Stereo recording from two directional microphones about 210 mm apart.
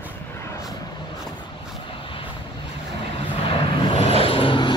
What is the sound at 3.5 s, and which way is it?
Vehicle, 30° left (ahead or behind).